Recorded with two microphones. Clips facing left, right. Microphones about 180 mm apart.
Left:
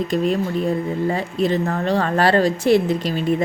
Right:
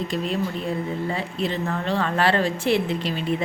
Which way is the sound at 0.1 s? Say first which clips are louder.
Left 7 dB; 45° left (ahead or behind).